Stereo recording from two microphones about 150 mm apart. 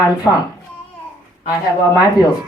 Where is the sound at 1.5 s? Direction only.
25° left (ahead or behind).